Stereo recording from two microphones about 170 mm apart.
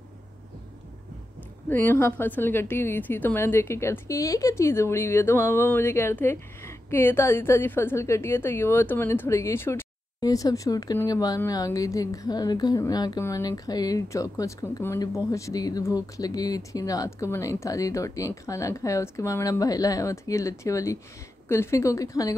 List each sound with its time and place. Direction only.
1.7 s a woman's voice: 10° left (ahead or behind)